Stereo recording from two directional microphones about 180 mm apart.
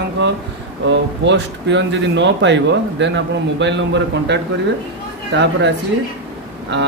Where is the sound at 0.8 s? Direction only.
80° right.